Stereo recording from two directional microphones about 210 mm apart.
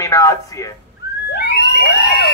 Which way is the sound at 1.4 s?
50° left (ahead or behind).